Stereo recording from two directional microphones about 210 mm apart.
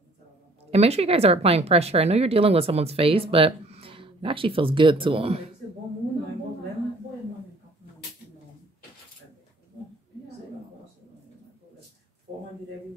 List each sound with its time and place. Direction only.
0.7 s speech: 30° right (ahead or behind)